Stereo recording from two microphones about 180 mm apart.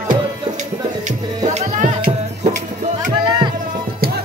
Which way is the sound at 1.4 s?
45° right (ahead or behind).